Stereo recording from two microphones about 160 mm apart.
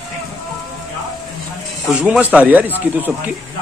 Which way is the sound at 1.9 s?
5° right (ahead or behind).